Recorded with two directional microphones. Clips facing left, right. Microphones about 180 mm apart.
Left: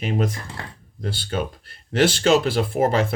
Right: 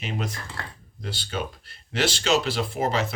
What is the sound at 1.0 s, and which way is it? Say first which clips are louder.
Speech: left 5 dB; 50° left (ahead or behind).